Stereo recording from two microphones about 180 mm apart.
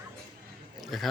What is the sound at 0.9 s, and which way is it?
Speech, centre (ahead or behind).